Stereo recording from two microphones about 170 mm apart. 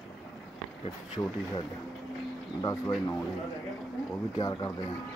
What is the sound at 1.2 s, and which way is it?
Speech, 20° left (ahead or behind).